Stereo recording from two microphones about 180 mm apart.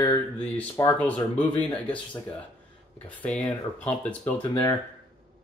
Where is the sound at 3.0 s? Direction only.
5° left (ahead or behind).